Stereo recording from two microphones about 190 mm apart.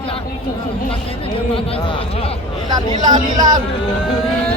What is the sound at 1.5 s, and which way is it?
Speech, 25° left (ahead or behind).